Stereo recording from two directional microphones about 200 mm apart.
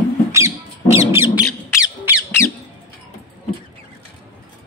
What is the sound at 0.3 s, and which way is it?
Squawk, 15° right (ahead or behind).